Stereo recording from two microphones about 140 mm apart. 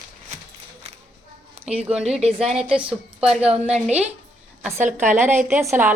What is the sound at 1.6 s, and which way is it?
Speech, 45° right (ahead or behind).